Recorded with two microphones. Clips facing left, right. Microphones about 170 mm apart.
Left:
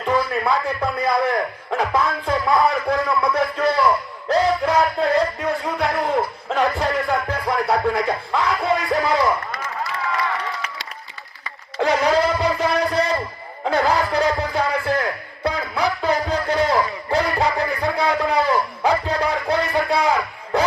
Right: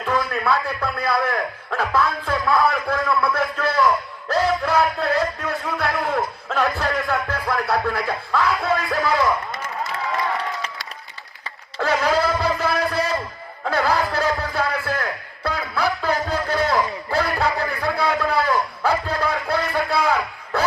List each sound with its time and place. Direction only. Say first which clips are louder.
0.0 s a man's voice: left 2 dB; 15° left (ahead or behind)
11.8 s a sound: left 2 dB; 15° left (ahead or behind)
18.2 s music: left 2 dB; 15° left (ahead or behind)